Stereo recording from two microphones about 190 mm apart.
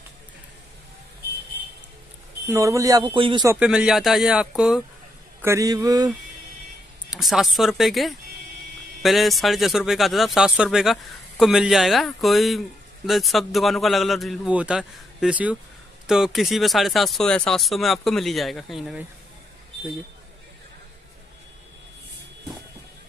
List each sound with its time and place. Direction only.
2.4 s a man's voice: 15° right (ahead or behind)
3.4 s speech: 5° right (ahead or behind)
5.4 s a man's voice: 15° right (ahead or behind)
7.1 s speech: centre (ahead or behind)